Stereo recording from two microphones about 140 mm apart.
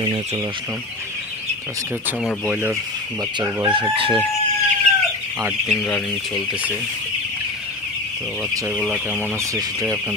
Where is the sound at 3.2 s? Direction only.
30° right (ahead or behind).